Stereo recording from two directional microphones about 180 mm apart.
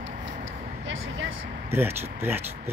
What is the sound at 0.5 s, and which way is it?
Vehicle, 90° right.